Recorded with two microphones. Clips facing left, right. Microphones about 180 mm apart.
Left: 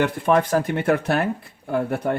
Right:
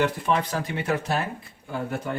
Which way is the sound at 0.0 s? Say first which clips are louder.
Left 5 dB; 55° left (ahead or behind).